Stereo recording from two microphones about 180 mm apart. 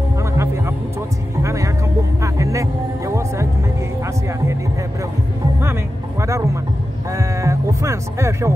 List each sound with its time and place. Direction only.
1.4 s music: 15° right (ahead or behind)
6.2 s a sound: 15° right (ahead or behind)
7.2 s music: 15° right (ahead or behind)